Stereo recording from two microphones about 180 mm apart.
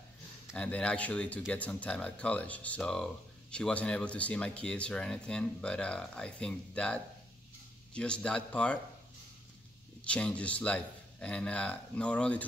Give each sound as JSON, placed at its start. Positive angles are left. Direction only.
{"t": 0.6, "sound": "speech", "side_deg": 5}
{"t": 10.0, "sound": "speech", "side_deg": 5}